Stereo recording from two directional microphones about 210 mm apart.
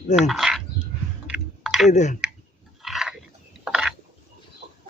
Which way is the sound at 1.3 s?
5° right (ahead or behind).